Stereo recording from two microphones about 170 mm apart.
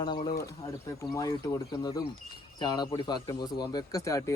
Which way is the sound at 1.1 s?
15° left (ahead or behind).